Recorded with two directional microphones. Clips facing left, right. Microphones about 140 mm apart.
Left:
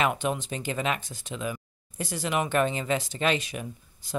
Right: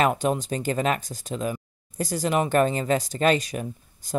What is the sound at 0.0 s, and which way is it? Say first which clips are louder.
Speech: right 4 dB; 40° right (ahead or behind).